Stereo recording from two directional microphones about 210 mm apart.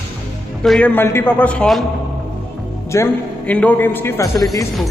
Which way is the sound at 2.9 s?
10° left (ahead or behind).